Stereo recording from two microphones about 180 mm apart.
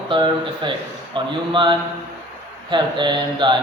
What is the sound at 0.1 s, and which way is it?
Speech, 25° right (ahead or behind).